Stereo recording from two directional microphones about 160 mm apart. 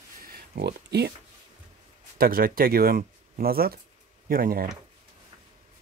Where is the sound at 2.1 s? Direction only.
65° right (ahead or behind).